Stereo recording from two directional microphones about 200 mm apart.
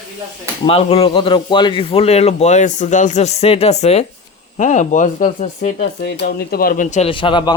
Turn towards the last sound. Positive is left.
turn(degrees=25)  # may be behind; listen again after turning